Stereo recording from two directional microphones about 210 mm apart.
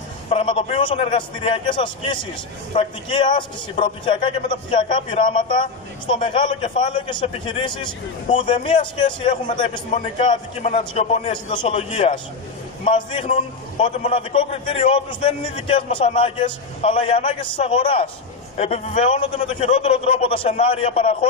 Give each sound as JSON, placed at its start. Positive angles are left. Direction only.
{"t": 0.3, "sound": "a man's voice", "side_deg": 25}
{"t": 5.2, "sound": "a man's voice", "side_deg": 40}
{"t": 6.0, "sound": "a man's voice", "side_deg": 25}